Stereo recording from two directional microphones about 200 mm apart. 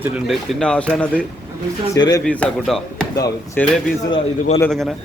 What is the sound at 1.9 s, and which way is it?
Speech, 20° left (ahead or behind).